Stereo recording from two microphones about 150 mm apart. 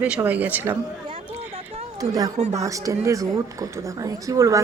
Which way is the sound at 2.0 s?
25° right (ahead or behind).